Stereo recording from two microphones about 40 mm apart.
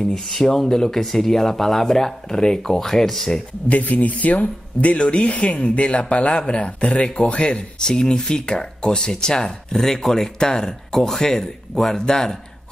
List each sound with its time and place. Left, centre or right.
0.0 s speech: centre
3.6 s speech: left; by 12.4 s centre